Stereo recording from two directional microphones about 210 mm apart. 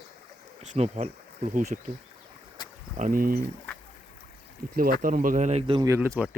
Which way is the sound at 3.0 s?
40° right (ahead or behind).